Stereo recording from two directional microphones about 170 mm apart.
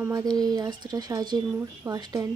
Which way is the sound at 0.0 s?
20° right (ahead or behind).